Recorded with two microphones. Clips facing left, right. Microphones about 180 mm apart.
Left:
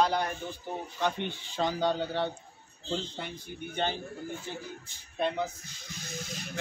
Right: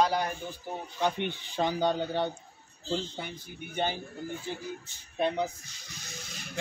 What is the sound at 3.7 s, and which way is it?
Speech, 10° right (ahead or behind).